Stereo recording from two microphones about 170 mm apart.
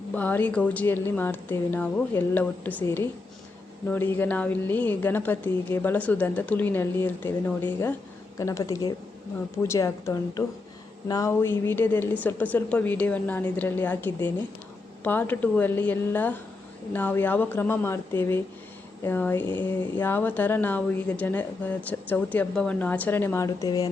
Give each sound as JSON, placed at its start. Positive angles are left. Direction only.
{"t": 0.1, "sound": "a woman's voice", "side_deg": 10}